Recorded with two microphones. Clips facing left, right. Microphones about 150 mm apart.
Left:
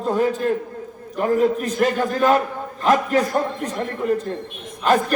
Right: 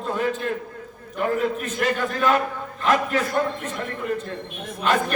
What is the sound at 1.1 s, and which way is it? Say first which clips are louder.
A man's voice: left 5 dB; 40° left (ahead or behind).